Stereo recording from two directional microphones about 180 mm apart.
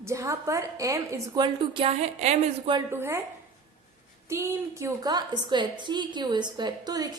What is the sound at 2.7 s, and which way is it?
Speech, 15° right (ahead or behind).